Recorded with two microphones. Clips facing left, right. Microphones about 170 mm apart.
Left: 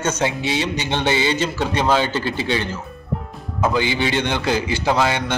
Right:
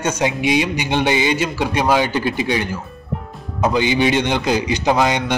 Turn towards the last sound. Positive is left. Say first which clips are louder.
# right 2 dB
turn(degrees=-15)  # may be behind; listen again after turning